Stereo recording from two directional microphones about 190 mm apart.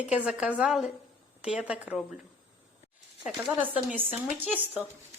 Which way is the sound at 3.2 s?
5° right (ahead or behind).